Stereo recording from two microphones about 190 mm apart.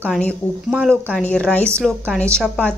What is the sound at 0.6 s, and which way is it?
Speech, 5° right (ahead or behind).